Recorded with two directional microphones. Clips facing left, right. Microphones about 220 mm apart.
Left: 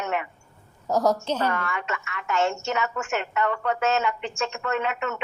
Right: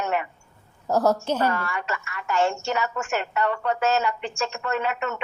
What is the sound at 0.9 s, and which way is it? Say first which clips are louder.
A woman's voice: right 1 dB; 5° right (ahead or behind).